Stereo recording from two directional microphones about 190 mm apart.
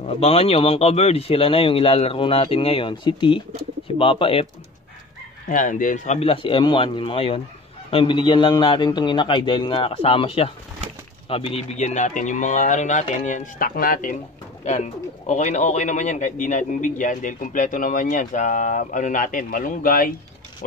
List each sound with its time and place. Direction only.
0.0 s a man's voice: 30° left (ahead or behind)
5.5 s a man's voice: 45° left (ahead or behind)
15.2 s a man's voice: 35° left (ahead or behind)